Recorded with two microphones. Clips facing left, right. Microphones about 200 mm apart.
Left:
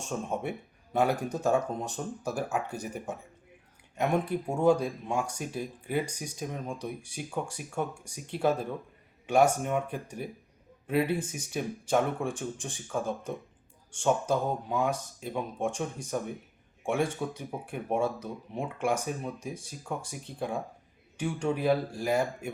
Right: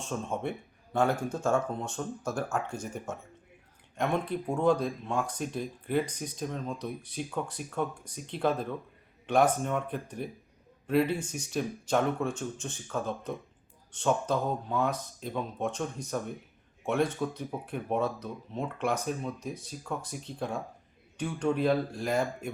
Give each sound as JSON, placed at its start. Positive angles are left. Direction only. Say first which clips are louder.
{"t": 0.0, "sound": "speech", "louder": "even", "side_deg": 10}
{"t": 1.1, "sound": "speech", "louder": "even", "side_deg": 40}
{"t": 2.0, "sound": "speech", "louder": "right 1 dB", "side_deg": 5}
{"t": 11.0, "sound": "speech", "louder": "even", "side_deg": 55}
{"t": 11.5, "sound": "speech", "louder": "left 1 dB", "side_deg": 10}